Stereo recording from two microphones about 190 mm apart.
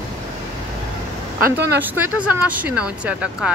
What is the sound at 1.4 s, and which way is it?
Speech, 60° right (ahead or behind).